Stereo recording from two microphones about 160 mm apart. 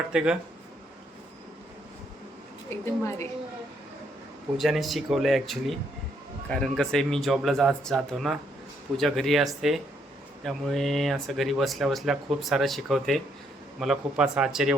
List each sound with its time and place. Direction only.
0.1 s speech: 5° right (ahead or behind)
2.8 s a woman's voice: 15° left (ahead or behind)
4.5 s speech: centre (ahead or behind)